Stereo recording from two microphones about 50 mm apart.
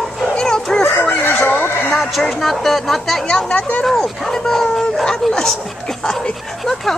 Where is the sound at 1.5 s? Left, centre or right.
Left.